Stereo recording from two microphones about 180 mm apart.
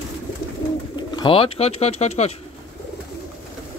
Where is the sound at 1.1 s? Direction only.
25° left (ahead or behind).